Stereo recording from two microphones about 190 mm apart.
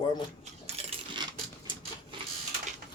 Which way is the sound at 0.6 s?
30° right (ahead or behind).